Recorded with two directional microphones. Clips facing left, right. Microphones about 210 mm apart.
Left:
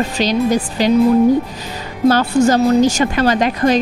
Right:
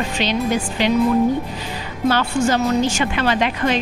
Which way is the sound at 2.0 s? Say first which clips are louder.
Left 6 dB; 40° left (ahead or behind).